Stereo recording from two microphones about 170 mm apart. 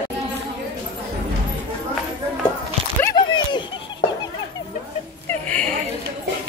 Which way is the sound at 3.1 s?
25° left (ahead or behind).